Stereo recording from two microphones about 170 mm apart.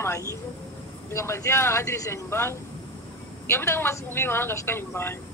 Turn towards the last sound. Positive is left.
turn(degrees=15)  # may be behind; listen again after turning